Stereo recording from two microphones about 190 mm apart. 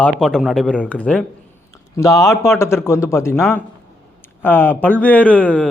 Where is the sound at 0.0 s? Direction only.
Centre (ahead or behind).